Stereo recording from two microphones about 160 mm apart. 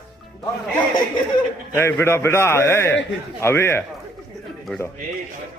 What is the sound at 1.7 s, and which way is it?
A man's voice, 15° left (ahead or behind).